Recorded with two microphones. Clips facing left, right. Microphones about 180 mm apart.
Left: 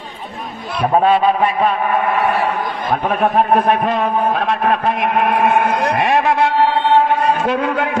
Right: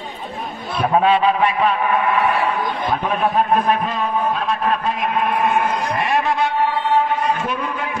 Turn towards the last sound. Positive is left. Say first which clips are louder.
# left 7 dB
turn(degrees=70)  # may be behind; listen again after turning